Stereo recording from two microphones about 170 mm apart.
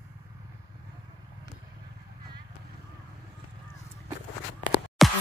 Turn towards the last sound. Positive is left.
turn(degrees=0)  # may be behind; listen again after turning